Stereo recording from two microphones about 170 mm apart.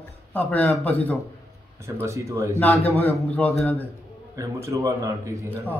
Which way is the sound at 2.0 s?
15° right (ahead or behind).